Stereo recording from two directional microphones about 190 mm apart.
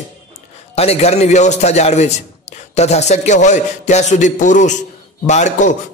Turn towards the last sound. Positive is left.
turn(degrees=40)  # may be behind; listen again after turning